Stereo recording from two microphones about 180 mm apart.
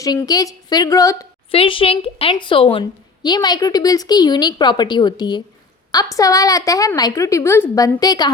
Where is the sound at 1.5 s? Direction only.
30° left (ahead or behind).